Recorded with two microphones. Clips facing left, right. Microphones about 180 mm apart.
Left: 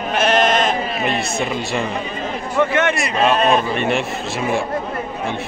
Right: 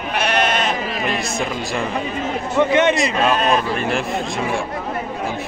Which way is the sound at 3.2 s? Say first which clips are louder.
Left 4 dB; centre (ahead or behind).